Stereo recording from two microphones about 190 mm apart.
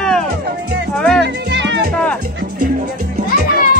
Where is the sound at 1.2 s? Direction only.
65° right (ahead or behind).